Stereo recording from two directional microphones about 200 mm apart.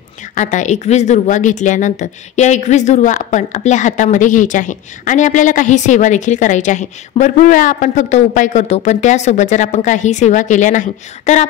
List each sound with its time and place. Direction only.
0.3 s a woman's voice: 40° left (ahead or behind)